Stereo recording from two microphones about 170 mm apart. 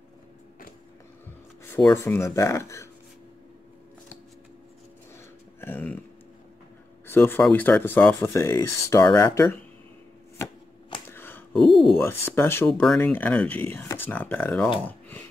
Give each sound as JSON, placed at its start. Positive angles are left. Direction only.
{"t": 1.6, "sound": "speech", "side_deg": 10}
{"t": 5.1, "sound": "a sound", "side_deg": 15}
{"t": 7.1, "sound": "speech", "side_deg": 15}
{"t": 11.1, "sound": "a sound", "side_deg": 10}
{"t": 11.5, "sound": "speech", "side_deg": 0}
{"t": 12.0, "sound": "speech", "side_deg": 15}